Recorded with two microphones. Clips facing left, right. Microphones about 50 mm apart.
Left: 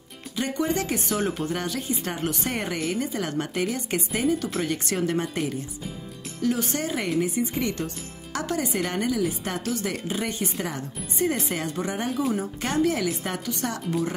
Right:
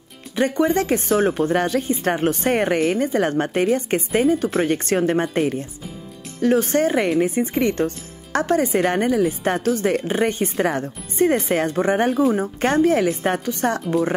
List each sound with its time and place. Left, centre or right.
0.4 s speech: right